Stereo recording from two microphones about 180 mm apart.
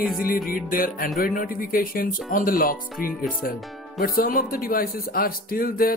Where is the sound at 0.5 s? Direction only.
50° left (ahead or behind).